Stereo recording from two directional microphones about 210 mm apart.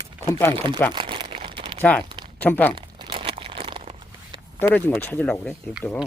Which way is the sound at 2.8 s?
20° right (ahead or behind).